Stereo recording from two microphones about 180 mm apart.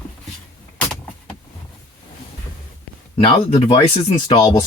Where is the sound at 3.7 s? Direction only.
25° left (ahead or behind).